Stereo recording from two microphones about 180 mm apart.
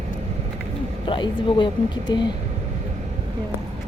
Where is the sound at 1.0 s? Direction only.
25° left (ahead or behind).